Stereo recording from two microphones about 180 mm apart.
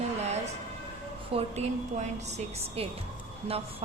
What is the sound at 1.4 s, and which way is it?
A woman's voice, 40° right (ahead or behind).